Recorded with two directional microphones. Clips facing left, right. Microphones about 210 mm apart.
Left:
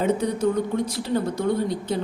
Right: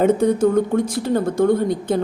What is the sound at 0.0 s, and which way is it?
Speech, 50° right (ahead or behind).